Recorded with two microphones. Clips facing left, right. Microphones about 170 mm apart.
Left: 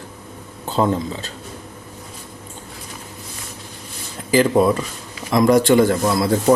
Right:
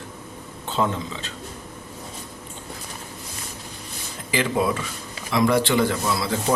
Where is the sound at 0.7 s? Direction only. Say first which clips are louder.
Left 5 dB; 40° left (ahead or behind).